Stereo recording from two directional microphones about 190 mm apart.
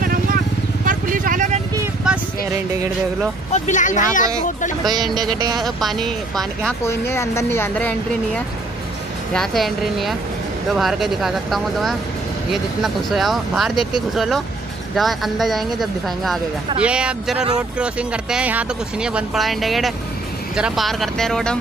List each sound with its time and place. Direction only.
0.0 s vehicle: 50° right (ahead or behind)
2.1 s a sound: 5° right (ahead or behind)
3.5 s speech: 40° left (ahead or behind)
4.8 s speech: 20° right (ahead or behind)
5.6 s speech: centre (ahead or behind)
6.8 s a woman's voice: 15° left (ahead or behind)
9.3 s speech: centre (ahead or behind)